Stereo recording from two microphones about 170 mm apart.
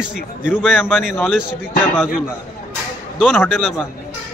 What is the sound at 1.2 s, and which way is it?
Speech, 5° right (ahead or behind).